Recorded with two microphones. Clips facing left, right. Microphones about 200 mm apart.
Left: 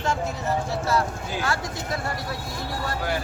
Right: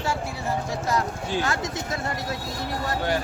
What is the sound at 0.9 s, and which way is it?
Speech, 20° right (ahead or behind).